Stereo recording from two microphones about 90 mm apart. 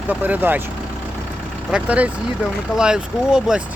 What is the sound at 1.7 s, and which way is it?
Speech, 15° right (ahead or behind).